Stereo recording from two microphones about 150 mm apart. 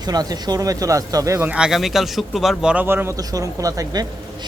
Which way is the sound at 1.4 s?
5° right (ahead or behind).